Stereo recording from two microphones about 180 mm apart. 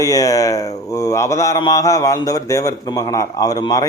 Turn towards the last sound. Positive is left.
turn(degrees=20)  # may be behind; listen again after turning